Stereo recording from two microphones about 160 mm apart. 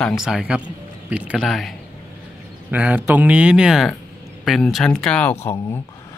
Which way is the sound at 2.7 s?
10° right (ahead or behind).